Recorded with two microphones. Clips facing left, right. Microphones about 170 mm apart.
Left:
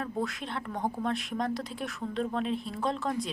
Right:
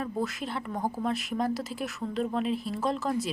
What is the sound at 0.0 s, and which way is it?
Speech, centre (ahead or behind).